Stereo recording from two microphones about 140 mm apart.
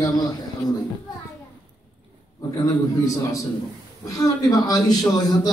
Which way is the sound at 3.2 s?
25° left (ahead or behind).